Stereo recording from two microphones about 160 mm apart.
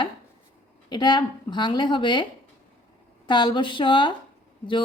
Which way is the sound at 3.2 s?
30° left (ahead or behind).